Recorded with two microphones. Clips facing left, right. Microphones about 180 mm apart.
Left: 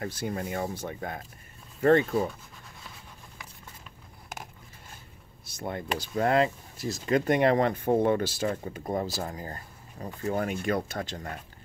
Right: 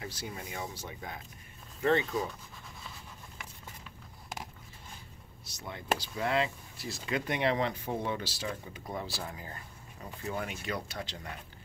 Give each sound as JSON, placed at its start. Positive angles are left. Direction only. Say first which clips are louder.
{"t": 0.0, "sound": "speech", "louder": "left 9 dB", "side_deg": 50}
{"t": 5.4, "sound": "speech", "louder": "left 9 dB", "side_deg": 50}